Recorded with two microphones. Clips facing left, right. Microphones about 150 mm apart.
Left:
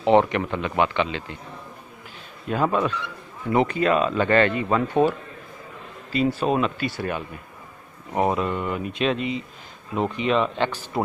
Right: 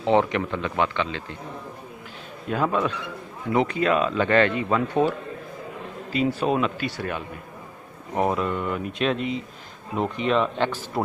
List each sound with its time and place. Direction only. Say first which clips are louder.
0.0 s speech: left 2 dB; 5° left (ahead or behind)
2.5 s speech: left 1 dB; centre (ahead or behind)
6.1 s speech: left 1 dB; 5° right (ahead or behind)